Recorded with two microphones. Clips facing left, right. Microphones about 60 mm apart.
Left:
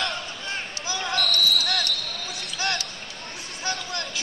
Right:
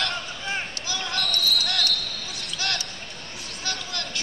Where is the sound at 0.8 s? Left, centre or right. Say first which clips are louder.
Left 6 dB; left.